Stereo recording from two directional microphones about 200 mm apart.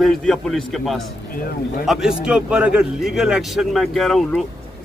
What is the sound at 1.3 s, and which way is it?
Speech, 45° left (ahead or behind).